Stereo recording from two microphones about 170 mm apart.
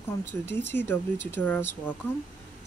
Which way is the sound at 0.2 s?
15° left (ahead or behind).